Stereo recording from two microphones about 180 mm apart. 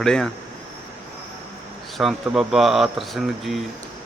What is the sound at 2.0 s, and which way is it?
Speech, centre (ahead or behind).